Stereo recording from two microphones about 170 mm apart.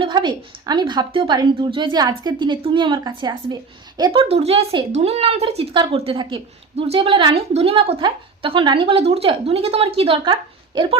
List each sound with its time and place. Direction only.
0.0 s a woman's voice: 25° right (ahead or behind)